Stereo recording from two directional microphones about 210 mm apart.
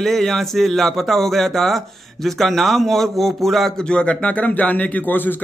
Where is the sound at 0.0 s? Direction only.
Centre (ahead or behind).